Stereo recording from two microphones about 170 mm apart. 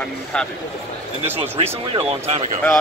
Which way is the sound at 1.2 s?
35° right (ahead or behind).